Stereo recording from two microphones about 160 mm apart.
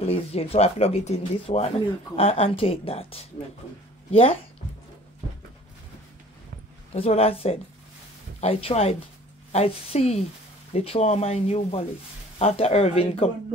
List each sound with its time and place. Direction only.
0.0 s speech: 40° left (ahead or behind)
6.9 s speech: 40° left (ahead or behind)